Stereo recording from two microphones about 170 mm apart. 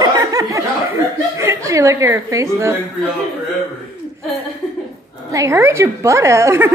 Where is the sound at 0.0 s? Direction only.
20° right (ahead or behind).